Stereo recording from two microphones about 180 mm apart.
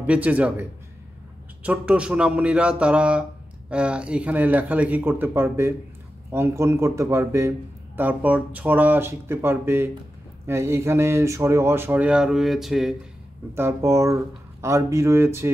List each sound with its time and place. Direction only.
0.0 s a man's voice: 10° right (ahead or behind)
13.6 s a man's voice: 15° right (ahead or behind)